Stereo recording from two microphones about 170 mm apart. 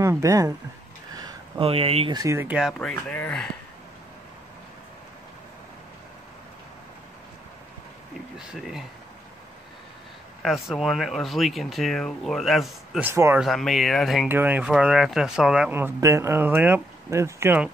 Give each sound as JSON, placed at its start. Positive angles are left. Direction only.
{"t": 0.0, "sound": "speech", "side_deg": -20}
{"t": 1.1, "sound": "a sound", "side_deg": -30}
{"t": 2.1, "sound": "speech", "side_deg": -15}
{"t": 8.4, "sound": "speech", "side_deg": 0}
{"t": 10.4, "sound": "speech", "side_deg": 0}
{"t": 13.0, "sound": "speech", "side_deg": -15}
{"t": 13.4, "sound": "speech", "side_deg": 0}